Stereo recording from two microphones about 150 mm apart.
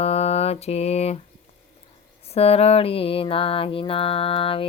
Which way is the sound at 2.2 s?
45° left (ahead or behind).